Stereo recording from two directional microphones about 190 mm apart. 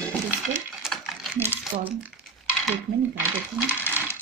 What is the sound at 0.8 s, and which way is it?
Sewing machine, centre (ahead or behind).